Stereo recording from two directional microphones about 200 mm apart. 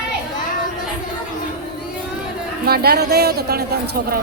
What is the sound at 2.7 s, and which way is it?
Speech, 50° right (ahead or behind).